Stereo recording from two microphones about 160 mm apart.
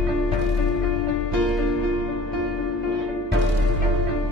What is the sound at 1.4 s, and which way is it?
Music, centre (ahead or behind).